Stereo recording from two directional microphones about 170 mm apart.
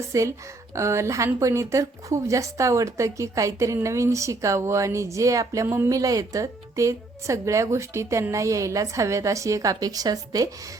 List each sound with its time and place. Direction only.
0.1 s a woman's voice: 20° right (ahead or behind)